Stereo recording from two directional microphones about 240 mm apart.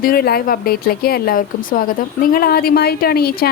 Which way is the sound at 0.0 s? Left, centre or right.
Left.